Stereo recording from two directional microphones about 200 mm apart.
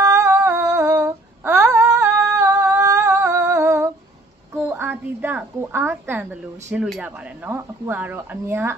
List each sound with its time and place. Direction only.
0.0 s female singing: 15° right (ahead or behind)
2.3 s humming: 15° right (ahead or behind)
4.6 s a sound: 10° right (ahead or behind)
6.7 s speech: 5° right (ahead or behind)